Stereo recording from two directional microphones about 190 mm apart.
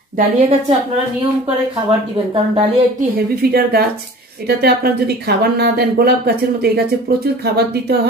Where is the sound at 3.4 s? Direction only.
55° right (ahead or behind).